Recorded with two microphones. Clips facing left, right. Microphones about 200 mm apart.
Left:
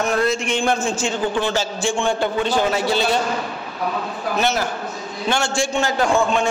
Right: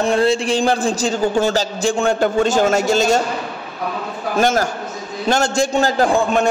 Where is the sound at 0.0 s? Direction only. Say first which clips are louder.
Right 4 dB; 30° right (ahead or behind).